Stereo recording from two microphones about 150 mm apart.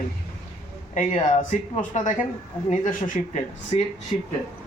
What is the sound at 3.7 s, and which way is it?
Speech, 45° left (ahead or behind).